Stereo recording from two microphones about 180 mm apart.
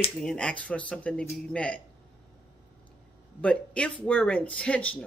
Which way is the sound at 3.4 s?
5° left (ahead or behind).